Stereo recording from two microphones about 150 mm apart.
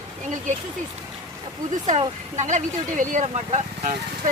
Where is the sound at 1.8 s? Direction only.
55° right (ahead or behind).